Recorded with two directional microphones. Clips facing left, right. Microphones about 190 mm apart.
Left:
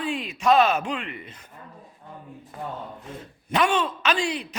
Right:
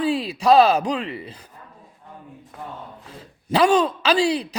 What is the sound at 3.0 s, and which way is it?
Speech, 30° right (ahead or behind).